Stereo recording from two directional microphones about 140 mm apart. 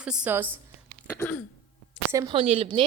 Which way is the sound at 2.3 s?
40° right (ahead or behind).